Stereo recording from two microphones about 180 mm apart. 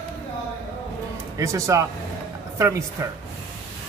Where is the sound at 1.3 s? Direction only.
20° right (ahead or behind).